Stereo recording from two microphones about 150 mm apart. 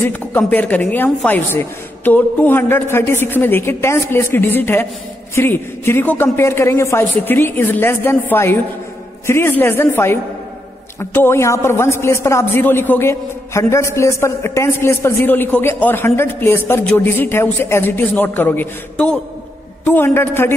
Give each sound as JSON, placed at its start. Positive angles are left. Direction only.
{"t": 0.0, "sound": "a man's voice", "side_deg": 10}